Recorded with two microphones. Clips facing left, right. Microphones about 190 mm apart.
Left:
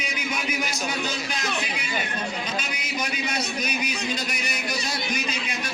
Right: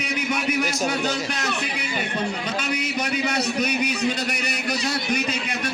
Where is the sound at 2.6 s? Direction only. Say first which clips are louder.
Right 5 dB; 65° right (ahead or behind).